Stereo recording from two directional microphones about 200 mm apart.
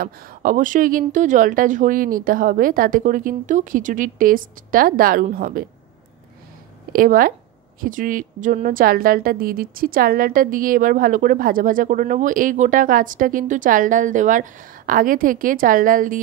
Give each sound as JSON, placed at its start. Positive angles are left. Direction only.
{"t": 0.0, "sound": "a woman's voice", "side_deg": -45}
{"t": 6.9, "sound": "a woman's voice", "side_deg": -45}